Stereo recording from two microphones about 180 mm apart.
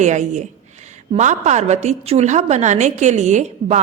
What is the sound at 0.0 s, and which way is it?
A woman's voice, 40° right (ahead or behind).